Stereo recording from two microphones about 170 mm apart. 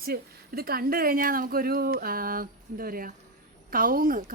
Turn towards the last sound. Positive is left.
turn(degrees=-55)  # may be behind; listen again after turning